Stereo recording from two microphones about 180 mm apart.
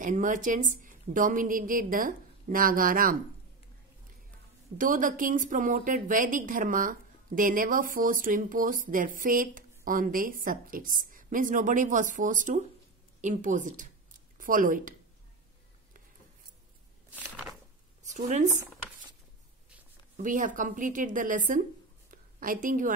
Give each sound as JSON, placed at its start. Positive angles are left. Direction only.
{"t": 0.0, "sound": "speech", "side_deg": -45}
{"t": 4.7, "sound": "speech", "side_deg": -45}
{"t": 18.0, "sound": "speech", "side_deg": -40}
{"t": 20.2, "sound": "speech", "side_deg": -45}